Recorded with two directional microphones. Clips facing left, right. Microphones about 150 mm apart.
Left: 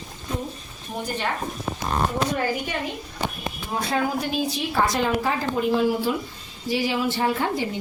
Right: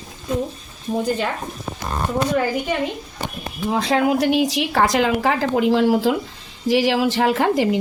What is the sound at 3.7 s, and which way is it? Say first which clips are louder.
A woman's voice: right 6 dB; 90° right.